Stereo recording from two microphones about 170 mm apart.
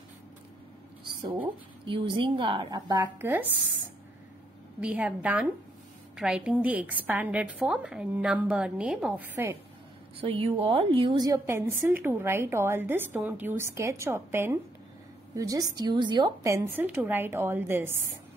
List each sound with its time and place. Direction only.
1.9 s speech: 30° right (ahead or behind); by 3.4 s 15° right (ahead or behind)
4.7 s a woman's voice: 10° right (ahead or behind)
10.2 s a woman's voice: 35° right (ahead or behind); by 17.9 s 15° right (ahead or behind)